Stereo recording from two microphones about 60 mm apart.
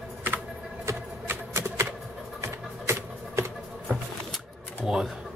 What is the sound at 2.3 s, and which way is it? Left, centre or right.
Music, right.